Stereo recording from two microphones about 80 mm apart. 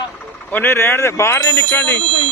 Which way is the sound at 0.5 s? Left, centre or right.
Left.